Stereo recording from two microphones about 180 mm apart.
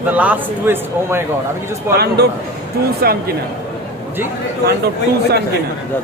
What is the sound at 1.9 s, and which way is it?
Speech, 65° right (ahead or behind).